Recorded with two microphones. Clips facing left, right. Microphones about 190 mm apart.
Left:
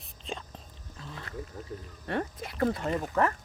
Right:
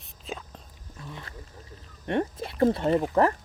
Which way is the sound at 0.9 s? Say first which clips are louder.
Right 2 dB; 25° right (ahead or behind).